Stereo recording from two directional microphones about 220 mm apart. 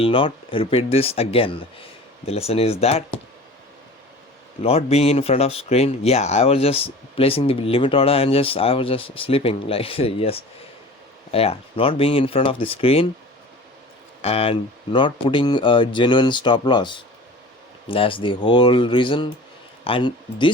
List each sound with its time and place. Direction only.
0.0 s speech: 25° left (ahead or behind)
4.6 s speech: 30° left (ahead or behind)
14.2 s speech: 25° left (ahead or behind)